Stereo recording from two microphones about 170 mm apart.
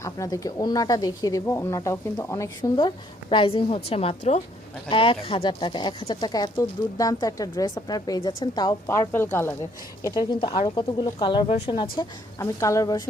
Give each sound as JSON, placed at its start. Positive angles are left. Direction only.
{"t": 0.0, "sound": "speech", "side_deg": 20}
{"t": 8.9, "sound": "speech", "side_deg": 15}
{"t": 10.0, "sound": "speech", "side_deg": 25}